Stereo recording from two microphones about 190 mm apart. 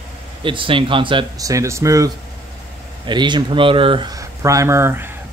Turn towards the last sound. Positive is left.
turn(degrees=-10)  # may be behind; listen again after turning